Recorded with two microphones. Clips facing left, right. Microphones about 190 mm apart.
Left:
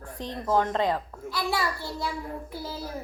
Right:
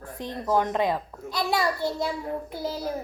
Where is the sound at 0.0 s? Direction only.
10° right (ahead or behind).